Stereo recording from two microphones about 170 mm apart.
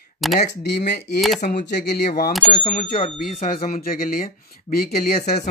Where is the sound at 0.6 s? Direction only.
75° left (ahead or behind).